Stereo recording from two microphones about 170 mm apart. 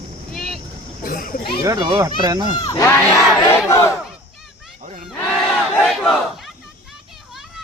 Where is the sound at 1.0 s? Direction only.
55° left (ahead or behind).